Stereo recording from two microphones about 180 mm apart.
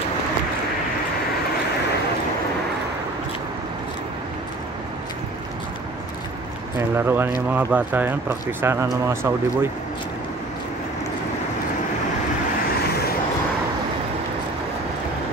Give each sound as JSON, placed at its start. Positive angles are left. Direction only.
{"t": 7.0, "sound": "speech", "side_deg": -15}